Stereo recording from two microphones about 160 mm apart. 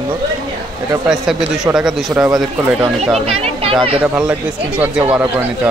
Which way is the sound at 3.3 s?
40° right (ahead or behind).